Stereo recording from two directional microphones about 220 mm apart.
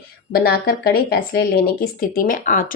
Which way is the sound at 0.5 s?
45° left (ahead or behind).